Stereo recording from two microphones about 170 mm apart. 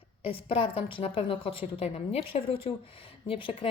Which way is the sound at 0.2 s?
35° left (ahead or behind).